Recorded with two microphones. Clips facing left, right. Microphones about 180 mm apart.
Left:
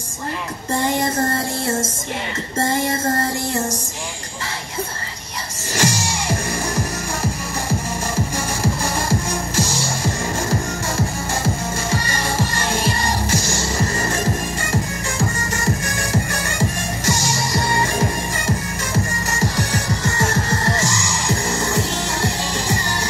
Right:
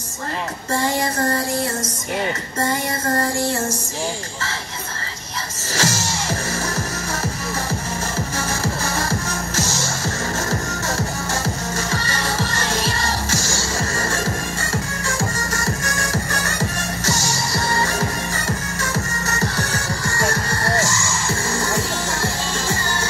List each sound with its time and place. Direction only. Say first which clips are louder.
5.8 s music: left 2 dB; 15° left (ahead or behind)
9.6 s music: left 2 dB; 15° left (ahead or behind)
11.9 s music: left 2 dB; 15° left (ahead or behind)
15.5 s music: left 2 dB; 20° left (ahead or behind)
19.4 s music: left 4 dB; 15° left (ahead or behind)